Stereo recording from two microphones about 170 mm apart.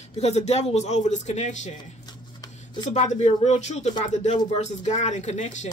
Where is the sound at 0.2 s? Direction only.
40° left (ahead or behind).